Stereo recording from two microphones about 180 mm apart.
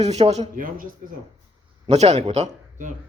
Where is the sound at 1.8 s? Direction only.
35° right (ahead or behind).